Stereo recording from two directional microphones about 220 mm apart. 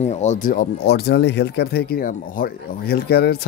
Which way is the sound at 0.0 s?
30° left (ahead or behind).